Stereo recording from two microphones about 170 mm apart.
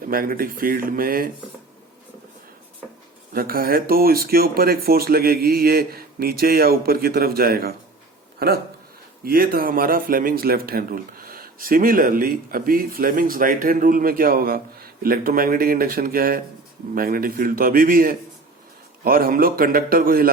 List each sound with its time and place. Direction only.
0.0 s speech: 55° right (ahead or behind)
3.3 s speech: 60° right (ahead or behind)